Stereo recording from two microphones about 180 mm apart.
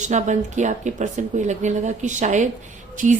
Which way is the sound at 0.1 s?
40° right (ahead or behind).